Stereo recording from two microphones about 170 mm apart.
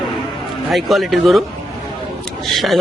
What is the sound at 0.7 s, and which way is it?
Speech, centre (ahead or behind).